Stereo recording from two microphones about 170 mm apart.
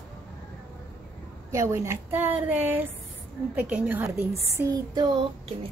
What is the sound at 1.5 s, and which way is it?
A woman's voice, 15° right (ahead or behind).